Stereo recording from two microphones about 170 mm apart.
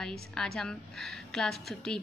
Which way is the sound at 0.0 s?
5° left (ahead or behind).